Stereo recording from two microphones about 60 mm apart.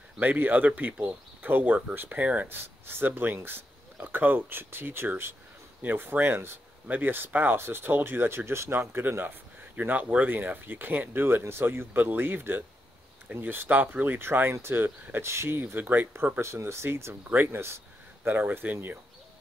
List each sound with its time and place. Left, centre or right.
0.2 s speech: right
2.4 s speech: right
16.3 s speech: right
18.2 s speech: right